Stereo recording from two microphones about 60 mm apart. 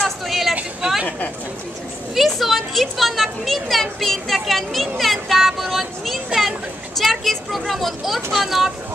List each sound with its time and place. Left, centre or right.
0.3 s a sound: centre
0.8 s chatter: right
2.1 s speech: centre